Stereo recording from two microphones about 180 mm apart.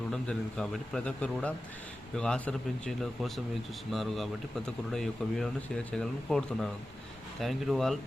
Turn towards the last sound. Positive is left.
turn(degrees=0)  # may be behind; listen again after turning